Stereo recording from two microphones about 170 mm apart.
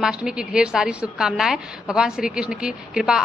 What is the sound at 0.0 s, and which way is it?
A woman's voice, 5° right (ahead or behind).